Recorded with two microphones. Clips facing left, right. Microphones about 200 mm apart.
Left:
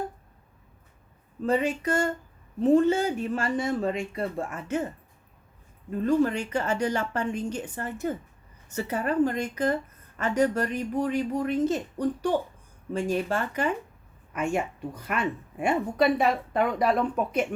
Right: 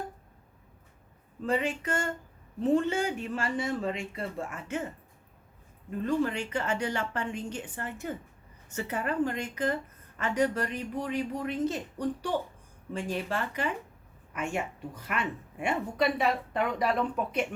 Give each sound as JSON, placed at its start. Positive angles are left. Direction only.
{"t": 1.5, "sound": "speech", "side_deg": 40}
{"t": 6.1, "sound": "speech", "side_deg": 40}
{"t": 15.0, "sound": "speech", "side_deg": 45}